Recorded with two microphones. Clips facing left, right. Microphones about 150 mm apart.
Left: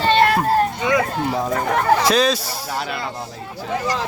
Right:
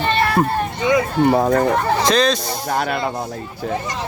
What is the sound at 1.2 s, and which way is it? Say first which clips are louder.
Speech: right 7 dB; 60° right (ahead or behind).